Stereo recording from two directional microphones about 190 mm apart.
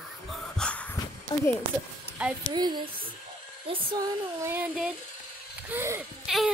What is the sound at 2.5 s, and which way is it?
Speech, 25° right (ahead or behind).